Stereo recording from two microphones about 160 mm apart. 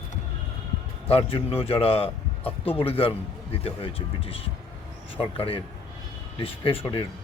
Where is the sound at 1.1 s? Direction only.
40° left (ahead or behind).